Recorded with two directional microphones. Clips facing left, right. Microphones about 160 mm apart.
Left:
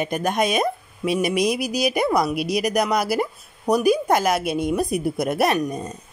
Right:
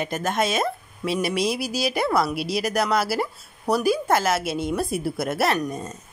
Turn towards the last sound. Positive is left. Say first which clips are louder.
# left 2 dB
turn(degrees=15)  # may be behind; listen again after turning